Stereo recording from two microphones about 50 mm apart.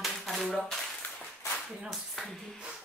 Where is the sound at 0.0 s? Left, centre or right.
Centre.